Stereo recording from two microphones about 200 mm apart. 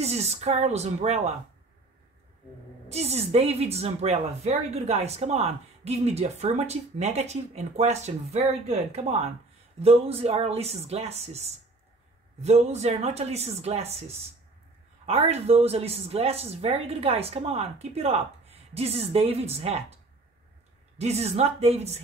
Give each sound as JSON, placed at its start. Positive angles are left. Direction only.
{"t": 0.0, "sound": "a woman's voice", "side_deg": -30}
{"t": 2.9, "sound": "a woman's voice", "side_deg": -30}
{"t": 15.0, "sound": "a woman's voice", "side_deg": -30}
{"t": 21.0, "sound": "a woman's voice", "side_deg": -30}